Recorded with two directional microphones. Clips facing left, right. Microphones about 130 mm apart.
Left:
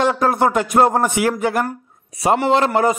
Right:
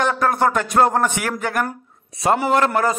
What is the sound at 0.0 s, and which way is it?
Speech, 25° left (ahead or behind).